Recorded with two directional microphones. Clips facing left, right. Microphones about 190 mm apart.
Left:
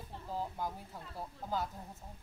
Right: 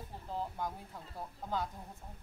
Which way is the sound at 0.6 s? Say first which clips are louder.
Even; 5° left (ahead or behind).